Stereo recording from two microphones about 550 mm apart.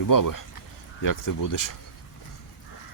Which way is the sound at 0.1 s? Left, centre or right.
Left.